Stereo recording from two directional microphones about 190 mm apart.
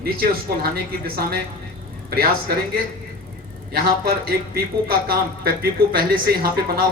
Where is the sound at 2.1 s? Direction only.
55° right (ahead or behind).